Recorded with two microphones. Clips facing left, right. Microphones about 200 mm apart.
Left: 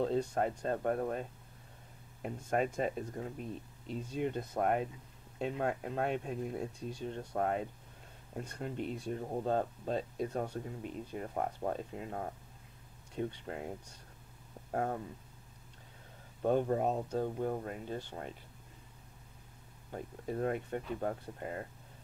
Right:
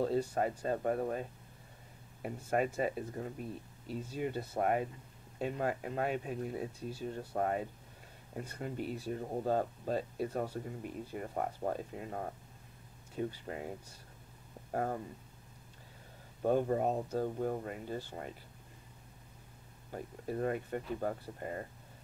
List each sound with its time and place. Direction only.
0.0 s speech: 5° right (ahead or behind)
2.2 s speech: 5° right (ahead or behind)
16.4 s speech: 5° right (ahead or behind)
19.9 s speech: centre (ahead or behind)